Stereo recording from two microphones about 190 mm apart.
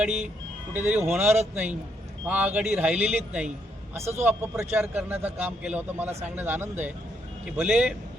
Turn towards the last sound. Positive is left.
turn(degrees=-5)  # may be behind; listen again after turning